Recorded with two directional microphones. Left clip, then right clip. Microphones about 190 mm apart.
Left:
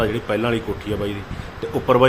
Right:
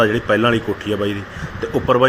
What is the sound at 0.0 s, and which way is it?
A man's voice, 10° right (ahead or behind).